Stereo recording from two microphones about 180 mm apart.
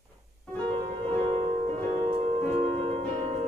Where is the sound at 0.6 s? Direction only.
30° right (ahead or behind).